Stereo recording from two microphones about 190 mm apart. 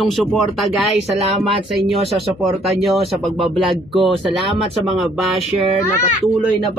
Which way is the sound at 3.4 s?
30° right (ahead or behind).